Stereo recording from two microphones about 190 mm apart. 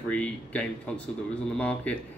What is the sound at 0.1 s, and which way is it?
Speech, 5° left (ahead or behind).